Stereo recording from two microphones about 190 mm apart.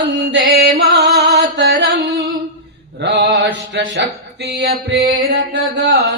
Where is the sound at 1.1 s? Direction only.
60° right (ahead or behind).